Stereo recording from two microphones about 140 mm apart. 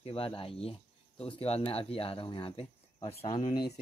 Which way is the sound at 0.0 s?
40° left (ahead or behind).